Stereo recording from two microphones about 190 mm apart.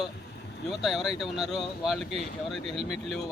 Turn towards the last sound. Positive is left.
turn(degrees=0)  # may be behind; listen again after turning